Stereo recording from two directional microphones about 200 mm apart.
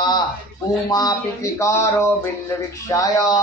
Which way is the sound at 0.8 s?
20° left (ahead or behind).